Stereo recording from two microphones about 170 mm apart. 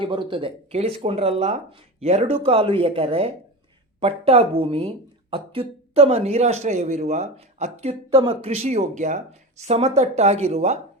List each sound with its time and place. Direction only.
0.0 s speech: 30° right (ahead or behind)